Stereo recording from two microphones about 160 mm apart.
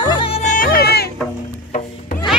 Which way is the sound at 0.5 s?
65° left (ahead or behind).